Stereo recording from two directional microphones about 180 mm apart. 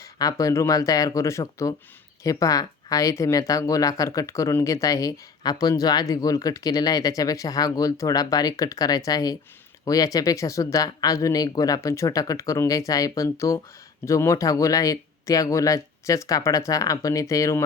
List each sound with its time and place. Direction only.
0.0 s speech: 20° left (ahead or behind)